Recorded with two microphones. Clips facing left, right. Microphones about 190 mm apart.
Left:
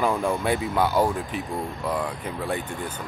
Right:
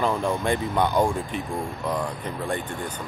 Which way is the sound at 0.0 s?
10° left (ahead or behind).